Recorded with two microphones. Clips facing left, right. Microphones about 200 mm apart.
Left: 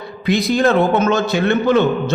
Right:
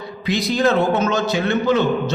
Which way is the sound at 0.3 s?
55° left (ahead or behind).